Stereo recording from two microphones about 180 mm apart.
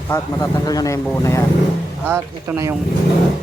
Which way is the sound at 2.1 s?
15° right (ahead or behind).